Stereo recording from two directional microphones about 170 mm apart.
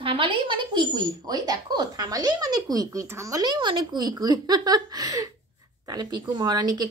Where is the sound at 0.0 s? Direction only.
30° right (ahead or behind).